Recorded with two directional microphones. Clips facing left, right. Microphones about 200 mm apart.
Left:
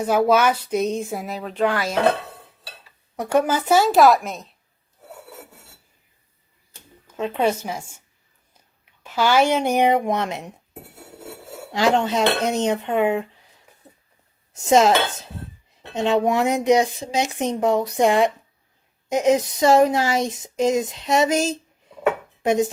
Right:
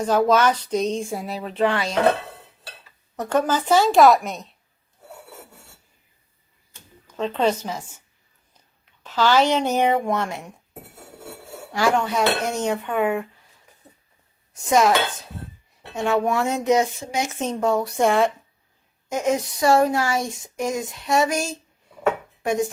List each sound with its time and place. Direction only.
0.0 s speech: 10° left (ahead or behind)
3.2 s speech: 10° left (ahead or behind)
7.2 s speech: 10° left (ahead or behind)
9.0 s speech: 10° left (ahead or behind)
11.7 s speech: 20° left (ahead or behind)
14.5 s dishes: 25° left (ahead or behind)
15.9 s speech: 20° left (ahead or behind)